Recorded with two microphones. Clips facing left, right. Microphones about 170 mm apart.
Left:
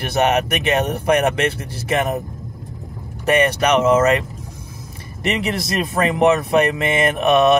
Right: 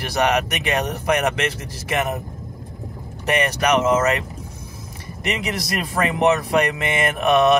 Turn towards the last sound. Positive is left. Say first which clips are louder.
# left 2 dB
turn(degrees=25)  # may be behind; listen again after turning